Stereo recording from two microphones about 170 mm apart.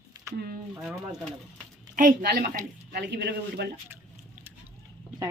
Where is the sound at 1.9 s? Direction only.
55° right (ahead or behind).